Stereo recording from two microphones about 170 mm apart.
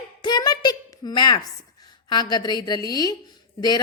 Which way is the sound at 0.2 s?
25° left (ahead or behind).